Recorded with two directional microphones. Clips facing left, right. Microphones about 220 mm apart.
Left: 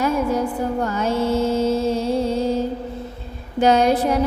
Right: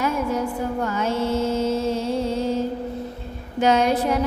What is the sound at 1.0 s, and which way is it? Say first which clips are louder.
Mantra: left 3 dB; 35° left (ahead or behind).